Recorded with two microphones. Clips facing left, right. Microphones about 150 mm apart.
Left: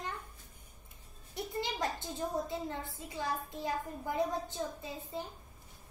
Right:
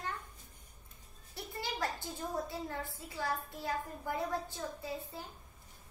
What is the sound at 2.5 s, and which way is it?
A woman's voice, 20° left (ahead or behind).